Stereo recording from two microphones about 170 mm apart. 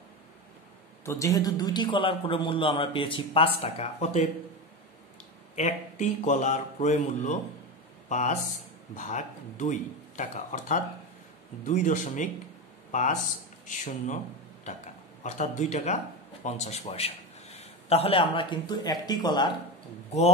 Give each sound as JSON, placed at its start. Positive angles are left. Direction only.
{"t": 1.0, "sound": "a man's voice", "side_deg": 20}
{"t": 5.6, "sound": "a man's voice", "side_deg": 45}